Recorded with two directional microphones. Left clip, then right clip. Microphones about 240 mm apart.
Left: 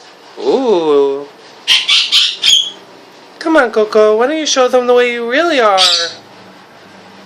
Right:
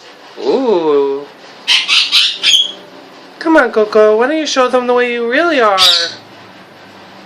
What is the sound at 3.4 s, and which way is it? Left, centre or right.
Speech, centre.